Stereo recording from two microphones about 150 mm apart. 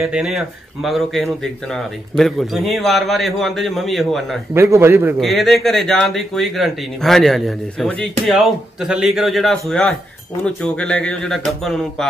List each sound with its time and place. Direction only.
0.0 s speech: 5° right (ahead or behind)
4.6 s a man's voice: 15° right (ahead or behind)
5.2 s speech: centre (ahead or behind)